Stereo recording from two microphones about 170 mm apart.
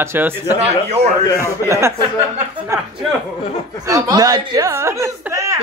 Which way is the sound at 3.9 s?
20° right (ahead or behind).